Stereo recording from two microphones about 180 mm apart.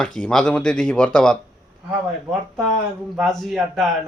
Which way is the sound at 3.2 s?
Centre (ahead or behind).